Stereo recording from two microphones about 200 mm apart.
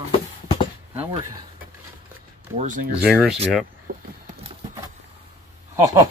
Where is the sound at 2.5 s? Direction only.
40° right (ahead or behind).